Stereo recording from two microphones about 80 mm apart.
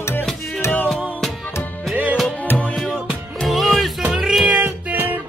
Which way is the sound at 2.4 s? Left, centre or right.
Left.